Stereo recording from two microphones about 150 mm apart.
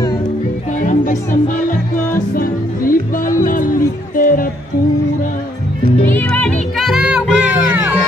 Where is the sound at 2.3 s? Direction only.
70° left (ahead or behind).